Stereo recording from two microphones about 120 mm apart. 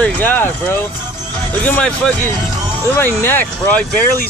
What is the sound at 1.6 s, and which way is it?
Speech, 10° left (ahead or behind).